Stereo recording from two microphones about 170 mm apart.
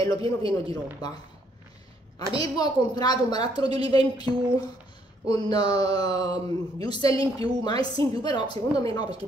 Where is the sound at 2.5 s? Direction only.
25° left (ahead or behind).